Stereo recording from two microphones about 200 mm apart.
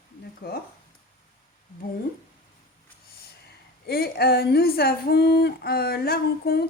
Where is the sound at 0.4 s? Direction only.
50° left (ahead or behind).